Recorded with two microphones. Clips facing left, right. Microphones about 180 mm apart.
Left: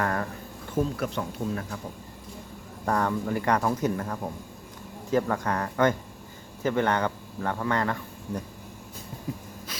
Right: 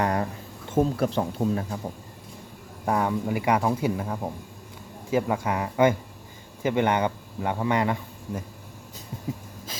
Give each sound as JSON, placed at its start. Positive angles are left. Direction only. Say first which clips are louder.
{"t": 0.0, "sound": "speech", "louder": "right 3 dB", "side_deg": -20}
{"t": 0.8, "sound": "speech", "louder": "right 5 dB", "side_deg": -30}
{"t": 2.8, "sound": "speech", "louder": "right 1 dB", "side_deg": -10}